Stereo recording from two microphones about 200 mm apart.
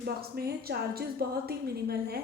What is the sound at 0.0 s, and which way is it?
A woman's voice, 50° right (ahead or behind).